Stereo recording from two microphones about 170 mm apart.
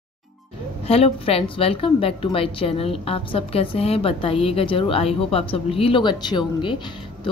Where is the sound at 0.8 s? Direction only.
35° left (ahead or behind).